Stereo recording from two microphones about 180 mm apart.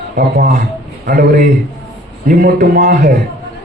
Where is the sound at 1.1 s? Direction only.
50° right (ahead or behind).